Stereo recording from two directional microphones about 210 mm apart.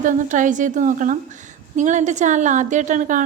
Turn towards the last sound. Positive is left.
turn(degrees=-40)  # may be behind; listen again after turning